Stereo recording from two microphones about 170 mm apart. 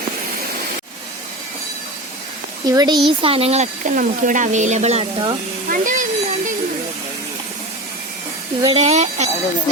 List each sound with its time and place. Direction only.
2.6 s speech: 20° right (ahead or behind)
3.1 s speech: 30° right (ahead or behind)
5.8 s a sound: 50° right (ahead or behind)
8.7 s speech: 40° right (ahead or behind)